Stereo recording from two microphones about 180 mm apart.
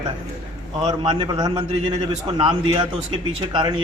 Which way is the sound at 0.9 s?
25° right (ahead or behind).